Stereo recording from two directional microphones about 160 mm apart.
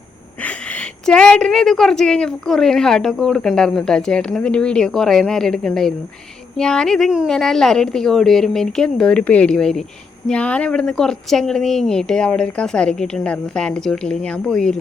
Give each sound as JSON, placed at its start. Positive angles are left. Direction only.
{"t": 0.4, "sound": "speech", "side_deg": 5}